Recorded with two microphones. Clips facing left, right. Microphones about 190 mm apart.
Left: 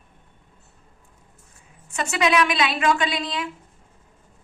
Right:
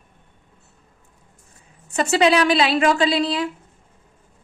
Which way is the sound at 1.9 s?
35° right (ahead or behind).